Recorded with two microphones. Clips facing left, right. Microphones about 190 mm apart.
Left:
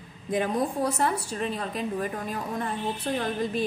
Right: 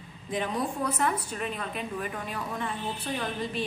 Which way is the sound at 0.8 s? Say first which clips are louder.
Left 3 dB; 40° left (ahead or behind).